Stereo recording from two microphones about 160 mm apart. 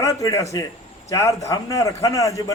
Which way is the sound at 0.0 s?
20° left (ahead or behind).